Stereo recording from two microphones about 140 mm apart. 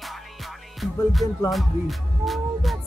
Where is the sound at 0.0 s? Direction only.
Centre (ahead or behind).